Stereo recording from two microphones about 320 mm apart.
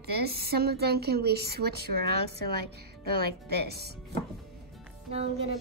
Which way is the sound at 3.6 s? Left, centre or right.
Right.